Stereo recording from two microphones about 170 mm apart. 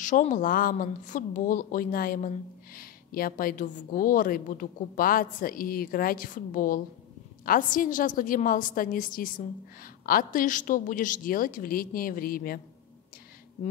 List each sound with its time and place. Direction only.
0.0 s a woman's voice: 45° left (ahead or behind)